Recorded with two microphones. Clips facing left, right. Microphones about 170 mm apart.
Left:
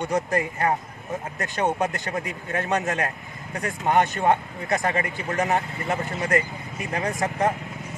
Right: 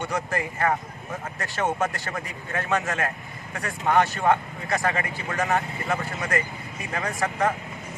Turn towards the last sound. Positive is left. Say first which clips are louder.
# left 1 dB
turn(degrees=20)  # may be behind; listen again after turning